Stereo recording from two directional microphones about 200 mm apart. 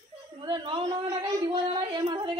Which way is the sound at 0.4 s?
25° right (ahead or behind).